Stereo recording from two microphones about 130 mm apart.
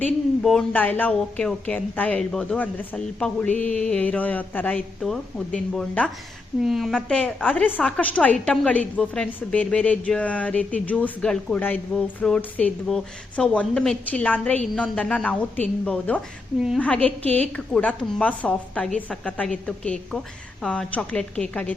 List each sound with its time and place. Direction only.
0.0 s a woman's voice: 10° left (ahead or behind)
6.6 s a woman's voice: centre (ahead or behind)
16.6 s a woman's voice: 5° right (ahead or behind)
16.8 s a woman's voice: 10° left (ahead or behind)